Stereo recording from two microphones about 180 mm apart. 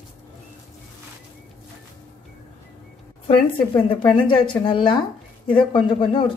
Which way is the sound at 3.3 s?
30° left (ahead or behind).